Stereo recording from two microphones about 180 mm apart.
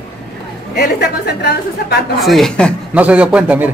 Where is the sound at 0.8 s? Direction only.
65° left (ahead or behind).